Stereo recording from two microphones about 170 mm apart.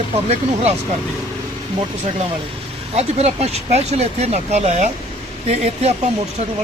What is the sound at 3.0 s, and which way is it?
Speech, 40° right (ahead or behind).